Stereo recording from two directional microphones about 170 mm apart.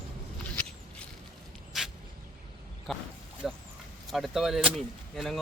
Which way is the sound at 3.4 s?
Centre (ahead or behind).